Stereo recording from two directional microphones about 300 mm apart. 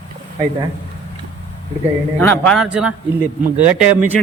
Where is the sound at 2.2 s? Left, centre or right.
Centre.